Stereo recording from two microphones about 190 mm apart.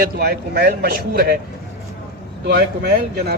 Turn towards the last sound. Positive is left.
turn(degrees=-60)  # may be behind; listen again after turning